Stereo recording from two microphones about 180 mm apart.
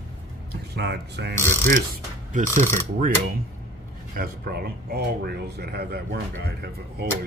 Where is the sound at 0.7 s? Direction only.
70° right (ahead or behind).